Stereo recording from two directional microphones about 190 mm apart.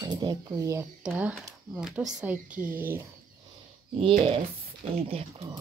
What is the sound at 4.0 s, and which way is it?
Speech, 30° right (ahead or behind).